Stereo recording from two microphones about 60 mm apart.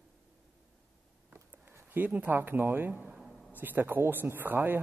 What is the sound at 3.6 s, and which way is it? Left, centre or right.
Speech, right.